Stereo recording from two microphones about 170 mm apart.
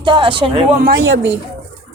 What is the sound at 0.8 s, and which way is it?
Speech, 70° right (ahead or behind).